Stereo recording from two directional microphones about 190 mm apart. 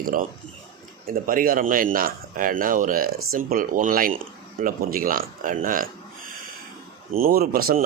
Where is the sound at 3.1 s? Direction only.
90° right.